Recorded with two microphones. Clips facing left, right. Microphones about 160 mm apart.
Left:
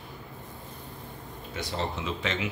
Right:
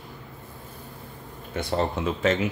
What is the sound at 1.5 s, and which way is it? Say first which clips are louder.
Speech: right 7 dB; 55° right (ahead or behind).